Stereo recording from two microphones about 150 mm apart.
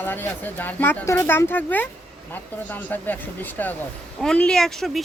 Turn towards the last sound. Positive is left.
turn(degrees=0)  # may be behind; listen again after turning